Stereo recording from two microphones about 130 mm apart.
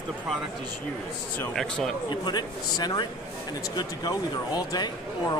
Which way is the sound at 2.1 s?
35° left (ahead or behind).